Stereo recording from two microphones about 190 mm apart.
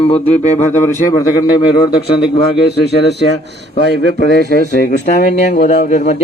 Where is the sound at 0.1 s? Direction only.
35° left (ahead or behind).